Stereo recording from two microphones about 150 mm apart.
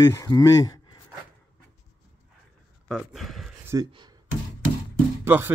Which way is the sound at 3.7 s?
25° right (ahead or behind).